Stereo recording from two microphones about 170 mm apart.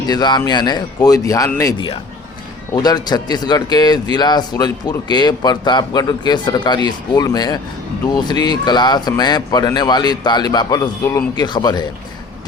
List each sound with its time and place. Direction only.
0.1 s speech: 25° left (ahead or behind)